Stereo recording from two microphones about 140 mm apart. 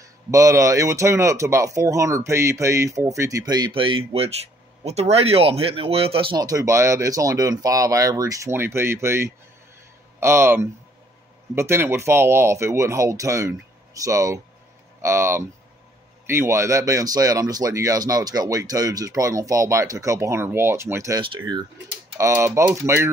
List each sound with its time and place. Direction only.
0.3 s speech: 25° right (ahead or behind); by 6.3 s 45° right (ahead or behind)
6.3 s speech: 25° right (ahead or behind)
21.2 s speech: 35° right (ahead or behind)
22.1 s speech: 20° right (ahead or behind)